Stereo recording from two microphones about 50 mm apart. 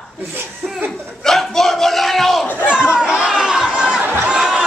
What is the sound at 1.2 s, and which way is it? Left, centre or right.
Battle cry, centre.